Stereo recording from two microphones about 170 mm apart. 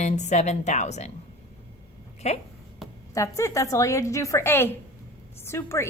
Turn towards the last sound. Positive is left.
turn(degrees=15)  # may be behind; listen again after turning